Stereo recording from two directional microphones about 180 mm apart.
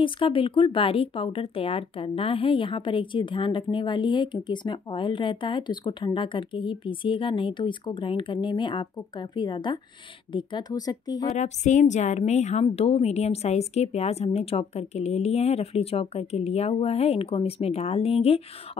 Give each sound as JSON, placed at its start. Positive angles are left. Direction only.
{"t": 0.0, "sound": "speech", "side_deg": 30}
{"t": 11.3, "sound": "a woman's voice", "side_deg": 40}